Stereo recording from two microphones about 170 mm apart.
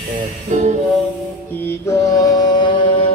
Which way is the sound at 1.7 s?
15° left (ahead or behind).